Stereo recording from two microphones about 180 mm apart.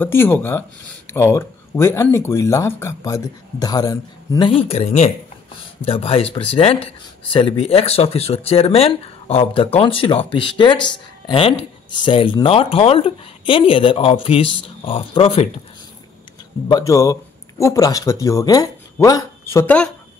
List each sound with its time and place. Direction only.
0.0 s speech: 10° left (ahead or behind)
4.5 s speech: 35° left (ahead or behind)
16.6 s speech: 20° left (ahead or behind)